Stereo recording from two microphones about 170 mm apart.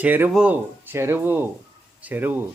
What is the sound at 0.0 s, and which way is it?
Speech, 10° right (ahead or behind).